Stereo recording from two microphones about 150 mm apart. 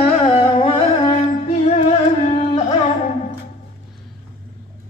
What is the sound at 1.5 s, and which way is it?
Music, 50° left (ahead or behind).